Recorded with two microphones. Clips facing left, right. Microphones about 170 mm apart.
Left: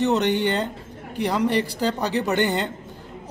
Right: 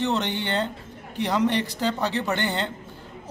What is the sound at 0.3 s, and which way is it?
A man's voice, 15° left (ahead or behind).